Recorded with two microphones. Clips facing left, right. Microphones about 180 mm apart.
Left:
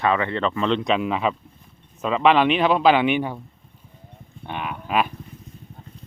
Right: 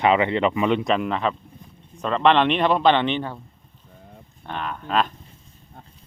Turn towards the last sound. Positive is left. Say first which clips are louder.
# even
turn(degrees=10)  # may be behind; listen again after turning